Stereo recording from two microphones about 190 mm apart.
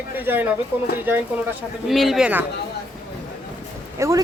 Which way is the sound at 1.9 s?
Centre (ahead or behind).